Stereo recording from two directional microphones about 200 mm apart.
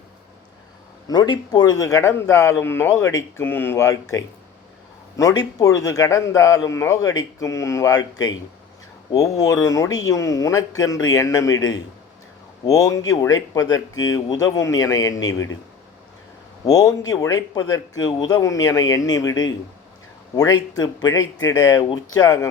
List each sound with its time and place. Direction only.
1.0 s a man's voice: 20° left (ahead or behind)
5.1 s a man's voice: 20° left (ahead or behind)
12.6 s a man's voice: 15° left (ahead or behind)
16.6 s a man's voice: 20° left (ahead or behind)